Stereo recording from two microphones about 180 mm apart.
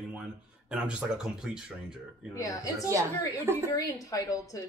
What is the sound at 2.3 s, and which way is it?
Speech, 20° left (ahead or behind).